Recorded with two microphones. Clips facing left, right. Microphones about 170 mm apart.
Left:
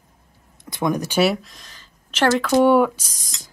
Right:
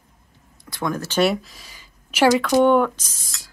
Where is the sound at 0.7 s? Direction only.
20° left (ahead or behind).